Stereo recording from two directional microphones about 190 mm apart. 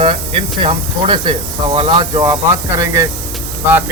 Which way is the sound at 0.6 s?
25° right (ahead or behind).